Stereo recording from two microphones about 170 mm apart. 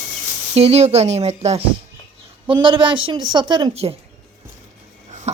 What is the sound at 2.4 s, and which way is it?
Speech, 30° right (ahead or behind).